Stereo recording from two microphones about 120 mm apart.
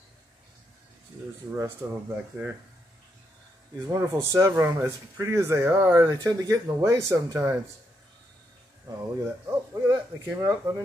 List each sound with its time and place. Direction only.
1.5 s speech: 20° right (ahead or behind)
4.0 s speech: 25° right (ahead or behind)
8.8 s speech: 25° right (ahead or behind)